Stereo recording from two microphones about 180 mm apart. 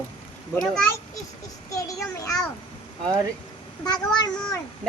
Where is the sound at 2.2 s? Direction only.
20° left (ahead or behind).